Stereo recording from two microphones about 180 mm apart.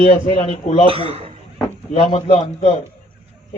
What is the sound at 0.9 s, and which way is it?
Speech, 30° right (ahead or behind).